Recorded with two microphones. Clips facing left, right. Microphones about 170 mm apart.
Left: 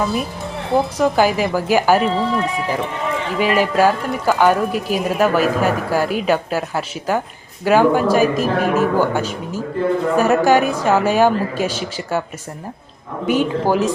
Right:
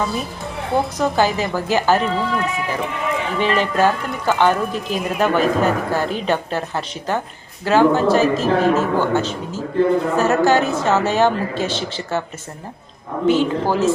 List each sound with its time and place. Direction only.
0.9 s speech: 10° left (ahead or behind)
2.0 s speech: 25° left (ahead or behind)
3.3 s speech: 10° left (ahead or behind)
13.2 s speech: 15° left (ahead or behind)